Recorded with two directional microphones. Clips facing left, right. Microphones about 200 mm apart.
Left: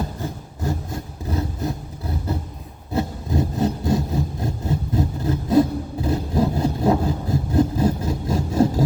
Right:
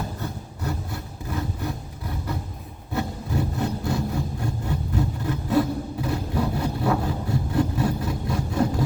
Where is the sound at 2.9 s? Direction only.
35° left (ahead or behind).